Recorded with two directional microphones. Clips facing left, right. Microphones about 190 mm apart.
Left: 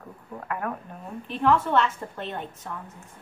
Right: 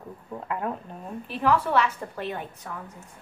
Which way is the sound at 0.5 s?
20° right (ahead or behind).